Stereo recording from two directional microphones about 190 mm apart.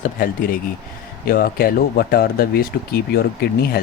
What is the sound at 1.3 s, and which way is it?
Speech, 50° left (ahead or behind).